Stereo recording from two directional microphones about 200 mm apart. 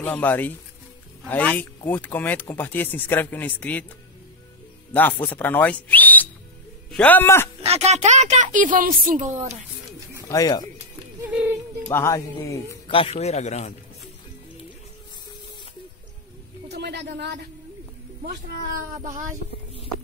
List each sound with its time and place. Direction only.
0.0 s speech: 10° left (ahead or behind)
4.9 s speech: 10° left (ahead or behind)
7.6 s speech: 30° right (ahead or behind)
10.2 s speech: 15° left (ahead or behind)
11.1 s music: 10° right (ahead or behind)
11.9 s speech: 15° left (ahead or behind)
12.8 s a man's voice: 30° left (ahead or behind)
16.7 s a sound: 55° right (ahead or behind)
18.2 s speech: 45° right (ahead or behind)